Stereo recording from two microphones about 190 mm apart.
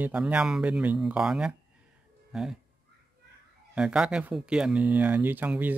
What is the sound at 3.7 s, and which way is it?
Speech, 5° right (ahead or behind).